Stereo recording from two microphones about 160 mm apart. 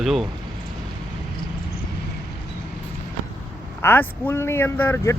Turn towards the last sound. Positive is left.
turn(degrees=15)  # may be behind; listen again after turning